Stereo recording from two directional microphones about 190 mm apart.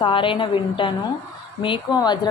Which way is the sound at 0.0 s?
25° left (ahead or behind).